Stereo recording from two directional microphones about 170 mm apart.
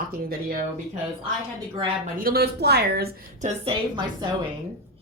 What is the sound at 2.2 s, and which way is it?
Speech, 65° right (ahead or behind).